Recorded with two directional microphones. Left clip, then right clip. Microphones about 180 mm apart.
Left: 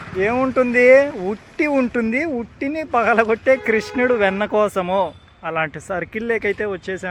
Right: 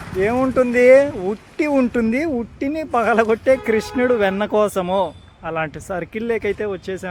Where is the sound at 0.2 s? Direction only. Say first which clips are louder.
Even; 5° right (ahead or behind).